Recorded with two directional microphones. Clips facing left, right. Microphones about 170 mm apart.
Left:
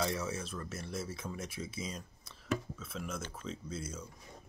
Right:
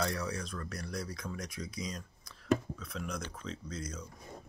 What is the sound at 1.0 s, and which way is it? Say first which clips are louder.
Speech: even; 25° left (ahead or behind).